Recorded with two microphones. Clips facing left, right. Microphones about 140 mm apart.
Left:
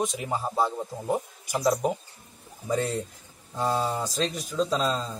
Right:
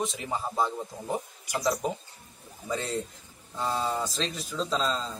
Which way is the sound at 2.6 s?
10° left (ahead or behind).